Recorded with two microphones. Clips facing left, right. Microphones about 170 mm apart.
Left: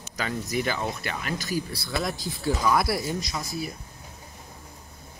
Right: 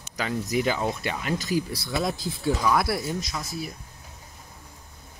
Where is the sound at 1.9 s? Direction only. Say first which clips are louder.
Right 2 dB; 5° right (ahead or behind).